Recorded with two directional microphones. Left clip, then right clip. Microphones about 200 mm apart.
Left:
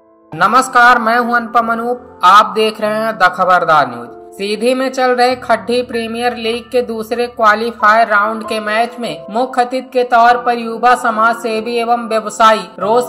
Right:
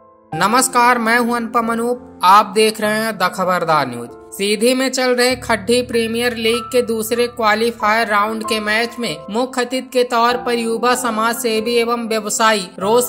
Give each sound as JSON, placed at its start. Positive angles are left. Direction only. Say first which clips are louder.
{"t": 0.4, "sound": "speech", "louder": "left 5 dB", "side_deg": -50}